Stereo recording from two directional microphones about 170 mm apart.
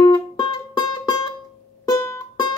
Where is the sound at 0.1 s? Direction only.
25° left (ahead or behind).